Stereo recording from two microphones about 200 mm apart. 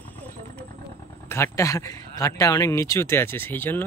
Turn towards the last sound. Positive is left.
turn(degrees=10)  # may be behind; listen again after turning